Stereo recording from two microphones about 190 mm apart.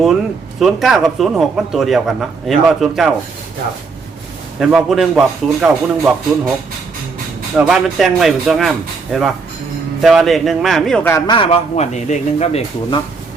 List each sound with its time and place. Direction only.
0.6 s a man's voice: centre (ahead or behind)
4.6 s a man's voice: centre (ahead or behind)
7.5 s a man's voice: centre (ahead or behind)
11.3 s speech: 30° left (ahead or behind)